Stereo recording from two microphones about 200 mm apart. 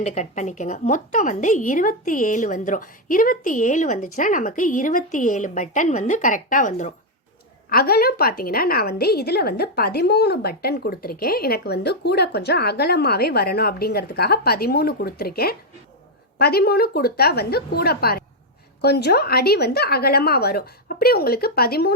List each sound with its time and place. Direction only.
0.0 s a woman's voice: 35° left (ahead or behind)
7.7 s a woman's voice: 50° left (ahead or behind)